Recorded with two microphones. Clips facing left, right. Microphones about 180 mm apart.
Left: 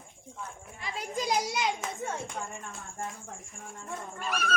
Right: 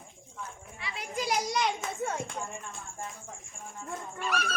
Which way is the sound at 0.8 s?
45° left (ahead or behind).